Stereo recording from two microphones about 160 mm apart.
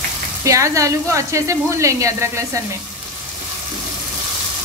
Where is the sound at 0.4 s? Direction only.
20° right (ahead or behind).